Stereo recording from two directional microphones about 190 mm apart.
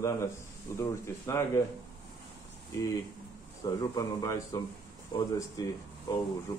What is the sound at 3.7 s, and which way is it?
Speech, 20° left (ahead or behind).